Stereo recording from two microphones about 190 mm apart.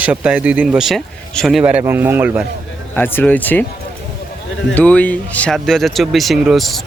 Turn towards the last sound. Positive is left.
turn(degrees=0)  # may be behind; listen again after turning